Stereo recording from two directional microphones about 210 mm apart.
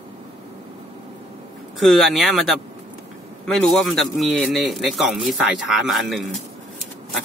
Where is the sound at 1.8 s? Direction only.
Centre (ahead or behind).